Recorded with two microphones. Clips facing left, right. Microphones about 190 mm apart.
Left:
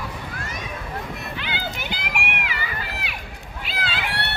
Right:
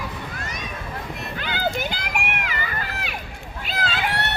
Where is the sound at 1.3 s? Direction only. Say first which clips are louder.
Right 9 dB; 45° right (ahead or behind).